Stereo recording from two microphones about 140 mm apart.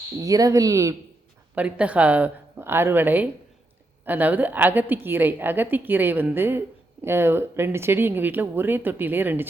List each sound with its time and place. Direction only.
0.2 s speech: 25° right (ahead or behind)
1.5 s a woman's voice: 10° right (ahead or behind)